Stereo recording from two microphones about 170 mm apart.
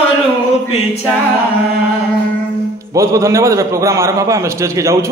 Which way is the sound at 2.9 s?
20° right (ahead or behind).